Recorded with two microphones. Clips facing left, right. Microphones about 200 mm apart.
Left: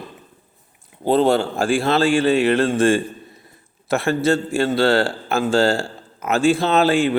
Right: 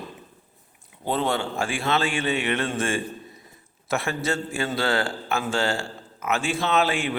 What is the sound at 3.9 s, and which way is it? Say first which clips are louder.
Speech: left 8 dB; 30° left (ahead or behind).